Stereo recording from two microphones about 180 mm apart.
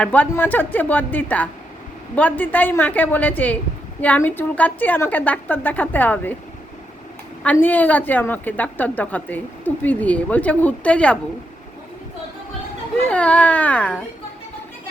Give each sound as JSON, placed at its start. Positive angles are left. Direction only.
{"t": 0.0, "sound": "a woman's voice", "side_deg": 10}
{"t": 7.4, "sound": "a woman's voice", "side_deg": 10}
{"t": 13.0, "sound": "a woman's voice", "side_deg": 5}